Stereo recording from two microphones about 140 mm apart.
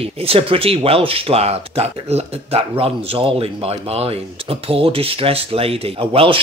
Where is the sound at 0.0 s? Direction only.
45° right (ahead or behind).